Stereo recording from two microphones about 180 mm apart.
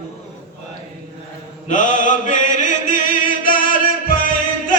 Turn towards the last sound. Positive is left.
turn(degrees=50)  # may be behind; listen again after turning